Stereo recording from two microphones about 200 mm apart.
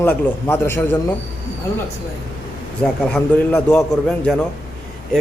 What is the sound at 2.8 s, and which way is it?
Speech, 5° left (ahead or behind).